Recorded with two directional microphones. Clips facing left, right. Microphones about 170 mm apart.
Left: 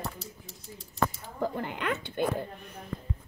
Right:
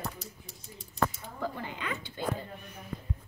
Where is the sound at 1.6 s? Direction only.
65° left (ahead or behind).